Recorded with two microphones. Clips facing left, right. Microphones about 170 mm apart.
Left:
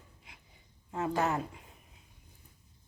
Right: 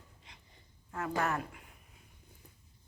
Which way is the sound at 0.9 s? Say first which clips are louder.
Left 3 dB; 20° left (ahead or behind).